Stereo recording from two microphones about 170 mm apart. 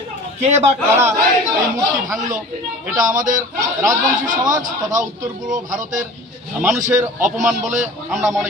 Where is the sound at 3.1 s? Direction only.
50° right (ahead or behind).